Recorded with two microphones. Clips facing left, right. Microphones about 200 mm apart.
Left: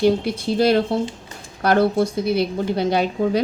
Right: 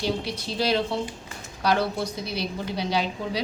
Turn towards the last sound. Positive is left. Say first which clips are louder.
# left 8 dB
turn(degrees=55)  # may be behind; listen again after turning